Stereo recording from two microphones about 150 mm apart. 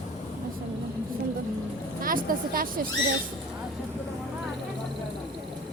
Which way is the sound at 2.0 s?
70° right (ahead or behind).